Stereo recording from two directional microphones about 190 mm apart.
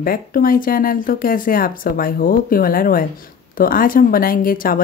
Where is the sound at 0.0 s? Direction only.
50° left (ahead or behind).